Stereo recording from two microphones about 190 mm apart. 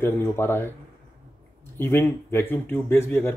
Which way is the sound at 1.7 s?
10° left (ahead or behind).